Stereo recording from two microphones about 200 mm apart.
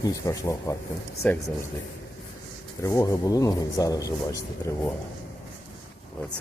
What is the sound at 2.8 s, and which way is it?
A man's voice, 15° left (ahead or behind).